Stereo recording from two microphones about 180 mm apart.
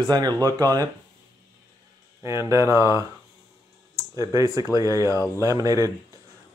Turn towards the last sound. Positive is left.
turn(degrees=-20)  # may be behind; listen again after turning